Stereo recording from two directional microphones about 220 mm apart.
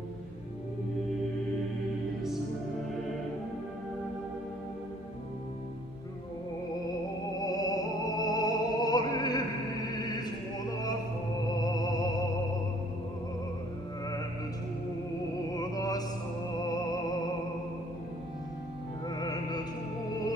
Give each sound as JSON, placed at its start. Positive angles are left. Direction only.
{"t": 7.3, "sound": "music", "side_deg": 15}
{"t": 15.5, "sound": "music", "side_deg": 15}
{"t": 19.0, "sound": "music", "side_deg": 20}